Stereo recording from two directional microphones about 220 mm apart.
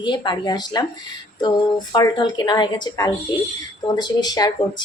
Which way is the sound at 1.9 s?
20° left (ahead or behind).